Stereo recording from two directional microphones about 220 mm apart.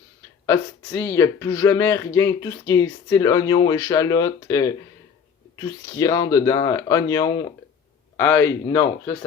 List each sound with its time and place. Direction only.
0.4 s speech: 10° left (ahead or behind)